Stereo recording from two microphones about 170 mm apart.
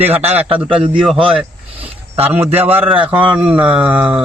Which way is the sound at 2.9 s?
30° right (ahead or behind).